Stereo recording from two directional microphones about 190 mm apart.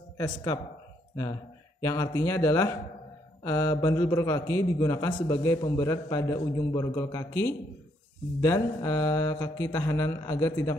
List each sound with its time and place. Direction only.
0.2 s a man's voice: 20° left (ahead or behind)
1.8 s a man's voice: 15° left (ahead or behind)